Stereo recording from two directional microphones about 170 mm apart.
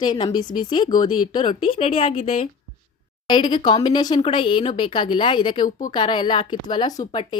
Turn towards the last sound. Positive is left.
turn(degrees=30)  # may be behind; listen again after turning